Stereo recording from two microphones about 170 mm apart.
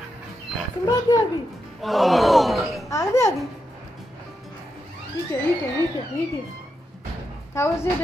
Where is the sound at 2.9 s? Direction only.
15° left (ahead or behind).